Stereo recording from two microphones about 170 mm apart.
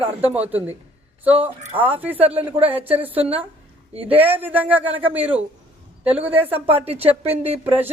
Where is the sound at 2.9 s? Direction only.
35° right (ahead or behind).